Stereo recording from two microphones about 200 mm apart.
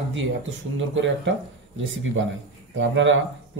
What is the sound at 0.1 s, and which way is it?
Speech, 70° right (ahead or behind).